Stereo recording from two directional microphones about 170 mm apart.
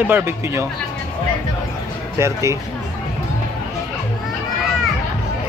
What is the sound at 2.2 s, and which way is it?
Speech, 15° right (ahead or behind).